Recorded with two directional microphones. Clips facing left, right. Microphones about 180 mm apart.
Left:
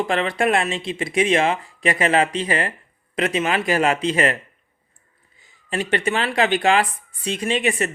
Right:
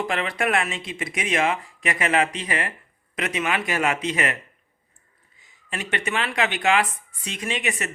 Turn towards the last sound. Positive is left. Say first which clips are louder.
# left 7 dB
turn(degrees=30)  # may be behind; listen again after turning